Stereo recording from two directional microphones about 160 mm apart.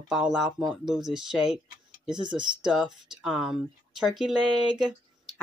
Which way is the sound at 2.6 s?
5° right (ahead or behind).